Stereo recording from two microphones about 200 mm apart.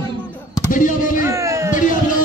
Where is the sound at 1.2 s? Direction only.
15° right (ahead or behind).